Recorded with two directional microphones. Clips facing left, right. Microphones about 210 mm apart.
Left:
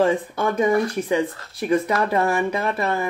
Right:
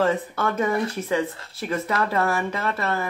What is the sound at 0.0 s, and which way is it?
Speech, 15° left (ahead or behind).